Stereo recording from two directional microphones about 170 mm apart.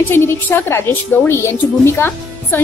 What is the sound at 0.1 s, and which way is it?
A woman's voice, 15° left (ahead or behind).